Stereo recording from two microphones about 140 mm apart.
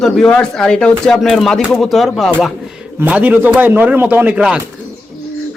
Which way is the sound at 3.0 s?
10° right (ahead or behind).